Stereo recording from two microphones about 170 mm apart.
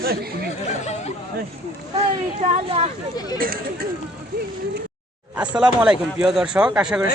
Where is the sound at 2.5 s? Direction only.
35° right (ahead or behind).